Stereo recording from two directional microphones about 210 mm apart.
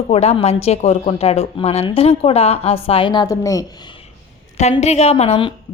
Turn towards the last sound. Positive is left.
turn(degrees=30)  # may be behind; listen again after turning